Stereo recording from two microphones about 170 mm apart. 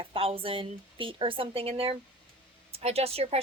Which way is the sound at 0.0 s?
35° right (ahead or behind).